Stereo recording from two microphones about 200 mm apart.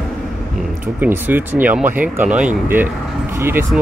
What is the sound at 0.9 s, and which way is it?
Speech, 10° right (ahead or behind).